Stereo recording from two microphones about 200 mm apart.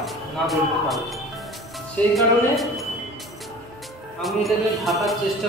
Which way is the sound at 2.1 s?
Centre (ahead or behind).